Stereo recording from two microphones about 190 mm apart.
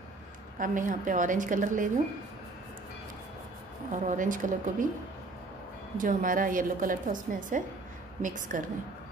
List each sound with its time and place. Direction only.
0.6 s a woman's voice: 45° right (ahead or behind)
3.9 s a woman's voice: 40° right (ahead or behind)
5.9 s a woman's voice: 45° right (ahead or behind)